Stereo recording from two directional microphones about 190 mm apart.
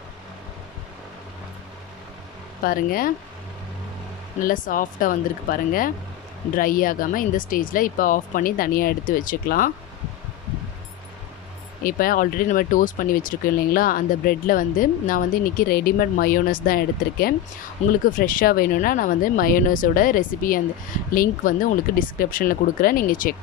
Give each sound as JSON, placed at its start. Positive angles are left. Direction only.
{"t": 2.6, "sound": "speech", "side_deg": 50}
{"t": 4.4, "sound": "speech", "side_deg": 45}
{"t": 11.8, "sound": "speech", "side_deg": 45}